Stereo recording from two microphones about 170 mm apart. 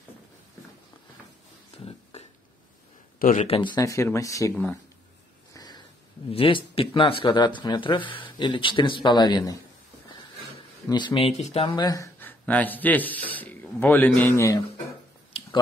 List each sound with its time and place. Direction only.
1.7 s a sound: 35° left (ahead or behind)
3.2 s a man's voice: 55° left (ahead or behind)
3.4 s speech: 30° left (ahead or behind)
5.5 s a sound: 25° left (ahead or behind)
6.3 s speech: 35° left (ahead or behind)
10.9 s speech: 25° left (ahead or behind)
11.7 s a man's voice: 20° left (ahead or behind)